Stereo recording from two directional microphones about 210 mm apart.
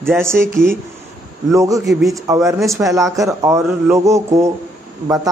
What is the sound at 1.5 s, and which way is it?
A man's voice, 15° right (ahead or behind).